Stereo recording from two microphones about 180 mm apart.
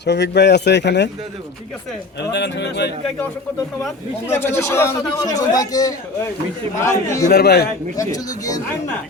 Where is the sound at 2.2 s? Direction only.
70° left (ahead or behind).